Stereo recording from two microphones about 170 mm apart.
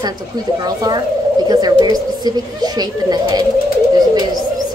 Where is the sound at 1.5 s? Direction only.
25° right (ahead or behind).